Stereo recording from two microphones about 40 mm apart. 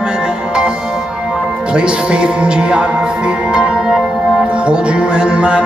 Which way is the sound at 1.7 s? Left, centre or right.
Right.